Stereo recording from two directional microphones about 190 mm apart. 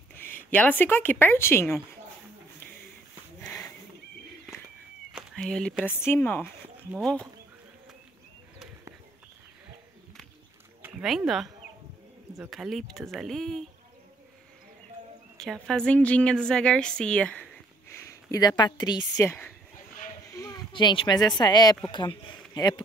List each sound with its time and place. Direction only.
0.2 s speech: 10° left (ahead or behind)
3.3 s a sound: 10° left (ahead or behind)
5.3 s a woman's voice: 5° left (ahead or behind)
10.8 s a woman's voice: centre (ahead or behind)
15.3 s a woman's voice: centre (ahead or behind)
17.9 s speech: 20° left (ahead or behind)